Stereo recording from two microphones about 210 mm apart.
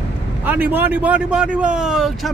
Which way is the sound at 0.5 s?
10° right (ahead or behind).